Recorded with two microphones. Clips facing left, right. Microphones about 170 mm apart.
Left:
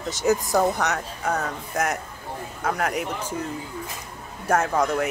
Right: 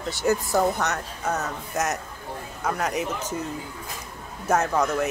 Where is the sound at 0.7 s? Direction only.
70° left (ahead or behind).